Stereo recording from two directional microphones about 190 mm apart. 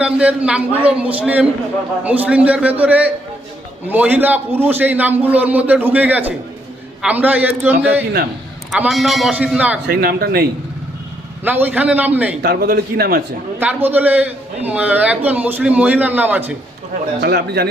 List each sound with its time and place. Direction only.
0.0 s a man's voice: 5° right (ahead or behind)
9.8 s a man's voice: 50° right (ahead or behind)
11.4 s a man's voice: 10° right (ahead or behind)
12.4 s a man's voice: 50° right (ahead or behind)
13.6 s a man's voice: 10° right (ahead or behind)
17.2 s speech: 55° right (ahead or behind)